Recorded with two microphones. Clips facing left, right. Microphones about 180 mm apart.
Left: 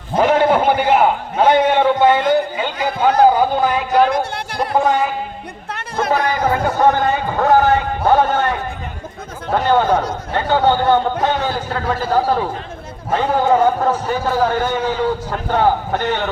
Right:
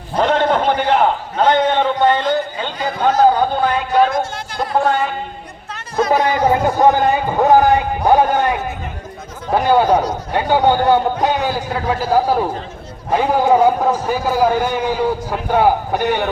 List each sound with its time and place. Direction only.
0.2 s a man's voice: 5° left (ahead or behind)
4.1 s a sound: 65° left (ahead or behind)
4.8 s speech: centre (ahead or behind)
6.1 s a man's voice: 20° right (ahead or behind)